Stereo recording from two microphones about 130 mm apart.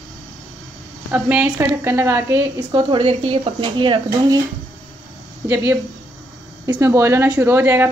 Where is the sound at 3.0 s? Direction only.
50° right (ahead or behind); by 4.4 s 30° right (ahead or behind).